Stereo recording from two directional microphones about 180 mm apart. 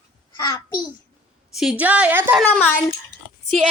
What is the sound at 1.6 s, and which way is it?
Speech, 5° right (ahead or behind).